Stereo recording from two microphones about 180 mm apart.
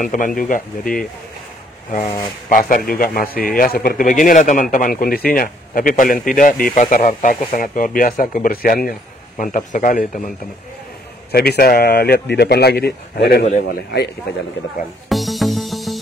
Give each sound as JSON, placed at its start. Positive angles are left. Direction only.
{"t": 0.0, "sound": "speech", "side_deg": 50}
{"t": 2.0, "sound": "speech", "side_deg": 25}
{"t": 2.5, "sound": "speech", "side_deg": 50}
{"t": 11.3, "sound": "speech", "side_deg": 60}
{"t": 15.0, "sound": "music", "side_deg": 0}